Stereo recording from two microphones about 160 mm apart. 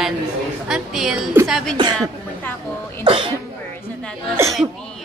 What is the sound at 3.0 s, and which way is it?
Speech, 35° right (ahead or behind).